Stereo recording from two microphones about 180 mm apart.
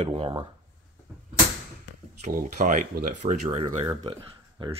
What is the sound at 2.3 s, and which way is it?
Speech, 45° right (ahead or behind).